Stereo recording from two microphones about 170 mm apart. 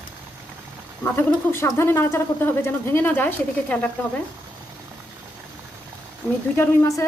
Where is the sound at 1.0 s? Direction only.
15° left (ahead or behind).